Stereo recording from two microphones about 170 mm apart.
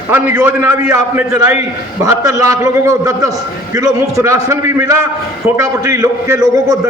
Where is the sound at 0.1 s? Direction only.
10° right (ahead or behind).